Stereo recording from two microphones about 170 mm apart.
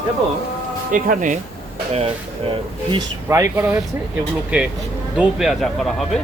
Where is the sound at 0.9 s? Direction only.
50° right (ahead or behind).